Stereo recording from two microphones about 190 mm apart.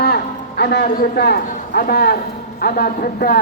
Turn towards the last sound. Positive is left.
turn(degrees=50)  # may be behind; listen again after turning